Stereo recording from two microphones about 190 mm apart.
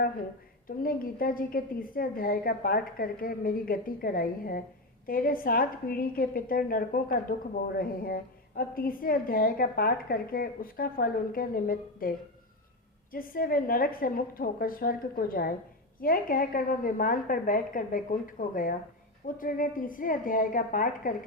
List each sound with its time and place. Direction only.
0.8 s a woman's voice: 50° left (ahead or behind)